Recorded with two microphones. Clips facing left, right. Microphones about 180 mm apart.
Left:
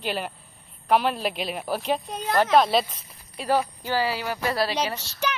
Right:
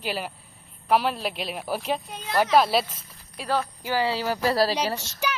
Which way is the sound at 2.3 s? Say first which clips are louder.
Left 1 dB; 5° right (ahead or behind).